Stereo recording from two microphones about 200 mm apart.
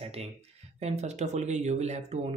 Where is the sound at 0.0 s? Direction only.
30° right (ahead or behind).